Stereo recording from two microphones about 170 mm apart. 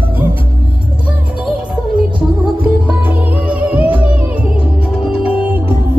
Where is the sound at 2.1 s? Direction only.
10° right (ahead or behind).